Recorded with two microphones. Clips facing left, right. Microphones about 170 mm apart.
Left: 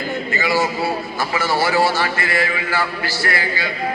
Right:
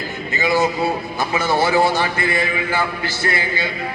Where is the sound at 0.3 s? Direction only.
20° right (ahead or behind).